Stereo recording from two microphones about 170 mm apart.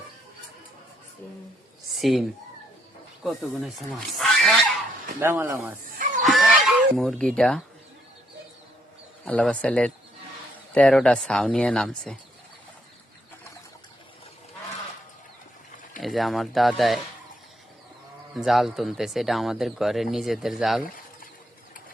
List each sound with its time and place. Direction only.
2.0 s speech: centre (ahead or behind)
3.2 s speech: centre (ahead or behind)
5.2 s speech: 15° right (ahead or behind)
6.2 s chicken: centre (ahead or behind)
9.2 s speech: 5° left (ahead or behind)
16.0 s speech: centre (ahead or behind)
18.3 s speech: centre (ahead or behind)
20.8 s bird: 55° left (ahead or behind)